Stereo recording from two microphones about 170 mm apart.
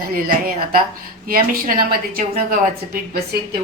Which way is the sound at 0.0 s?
60° right (ahead or behind).